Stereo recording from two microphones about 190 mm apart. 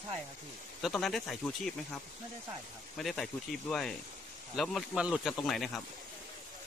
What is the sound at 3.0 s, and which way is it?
Speech, centre (ahead or behind).